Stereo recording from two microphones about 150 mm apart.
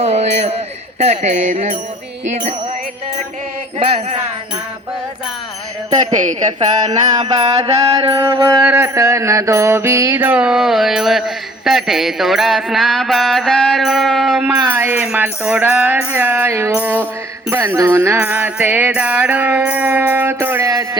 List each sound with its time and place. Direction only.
0.0 s music: 45° right (ahead or behind)
3.8 s music: 40° right (ahead or behind)
6.0 s speech: 55° right (ahead or behind)
6.6 s mantra: 30° right (ahead or behind); by 14.5 s centre (ahead or behind)
14.8 s music: 10° right (ahead or behind)